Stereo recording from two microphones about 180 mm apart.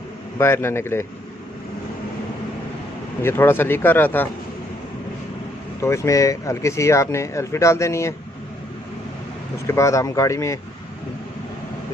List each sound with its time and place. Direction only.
0.3 s speech: 15° left (ahead or behind)
3.2 s speech: 10° left (ahead or behind)
5.8 s speech: 15° left (ahead or behind)
9.6 s speech: 15° left (ahead or behind)